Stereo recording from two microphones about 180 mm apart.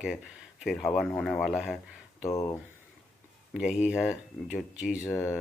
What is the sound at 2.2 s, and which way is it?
Speech, 15° left (ahead or behind).